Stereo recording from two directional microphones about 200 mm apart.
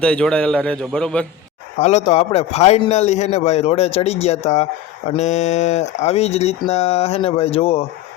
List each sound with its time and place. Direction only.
0.0 s a man's voice: 5° left (ahead or behind)
1.8 s a man's voice: 35° left (ahead or behind)